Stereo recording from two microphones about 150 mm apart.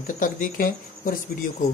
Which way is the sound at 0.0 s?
65° left (ahead or behind).